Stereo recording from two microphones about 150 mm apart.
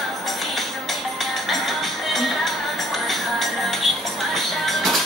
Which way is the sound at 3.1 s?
Centre (ahead or behind).